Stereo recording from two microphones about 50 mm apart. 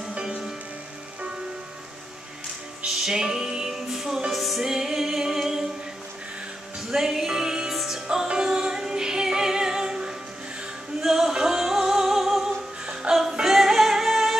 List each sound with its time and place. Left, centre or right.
0.2 s music: centre
2.8 s music: centre
6.9 s music: centre